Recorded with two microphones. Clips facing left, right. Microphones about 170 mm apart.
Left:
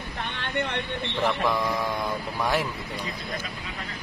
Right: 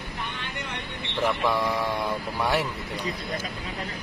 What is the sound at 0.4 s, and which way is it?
Vehicle, 65° left (ahead or behind).